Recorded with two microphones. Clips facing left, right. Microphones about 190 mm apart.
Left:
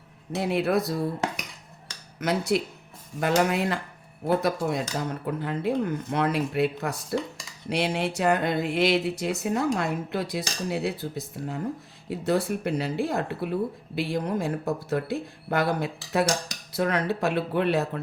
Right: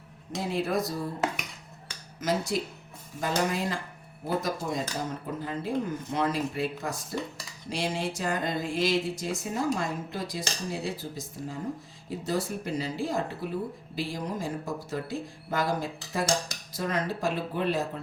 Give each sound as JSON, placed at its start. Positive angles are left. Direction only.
{"t": 0.3, "sound": "speech", "side_deg": 65}
{"t": 2.2, "sound": "speech", "side_deg": 65}